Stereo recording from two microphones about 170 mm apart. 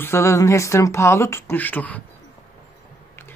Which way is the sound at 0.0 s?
15° left (ahead or behind).